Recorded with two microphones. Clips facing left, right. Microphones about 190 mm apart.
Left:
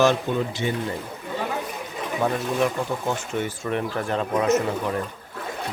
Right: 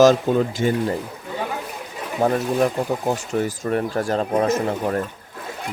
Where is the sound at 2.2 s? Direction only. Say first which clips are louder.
Right 4 dB; 40° right (ahead or behind).